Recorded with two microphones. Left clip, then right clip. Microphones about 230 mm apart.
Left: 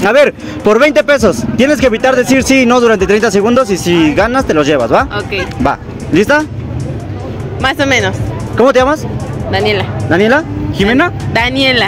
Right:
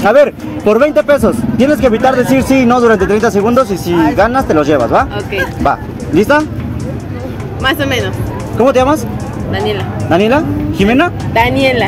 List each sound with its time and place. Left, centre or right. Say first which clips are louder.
0.0 s speech: even; left
7.6 s speech: left 3 dB; left
10.8 s speech: left 1 dB; centre
11.3 s speech: even; left